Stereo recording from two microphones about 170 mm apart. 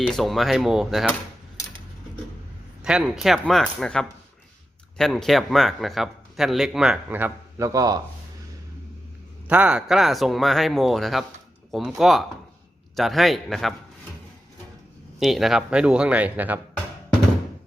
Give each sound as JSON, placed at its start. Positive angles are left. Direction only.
{"t": 0.1, "sound": "a man's voice", "side_deg": 0}
{"t": 2.8, "sound": "a man's voice", "side_deg": -5}
{"t": 9.5, "sound": "a man's voice", "side_deg": -5}
{"t": 15.2, "sound": "a man's voice", "side_deg": 0}